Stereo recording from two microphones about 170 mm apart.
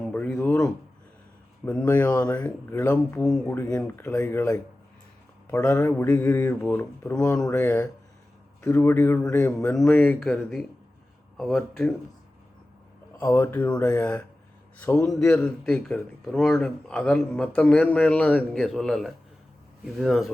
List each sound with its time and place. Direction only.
0.1 s a sound: 10° left (ahead or behind)
2.0 s speech: 10° left (ahead or behind)
13.1 s speech: 10° left (ahead or behind)
15.4 s speech: 5° left (ahead or behind)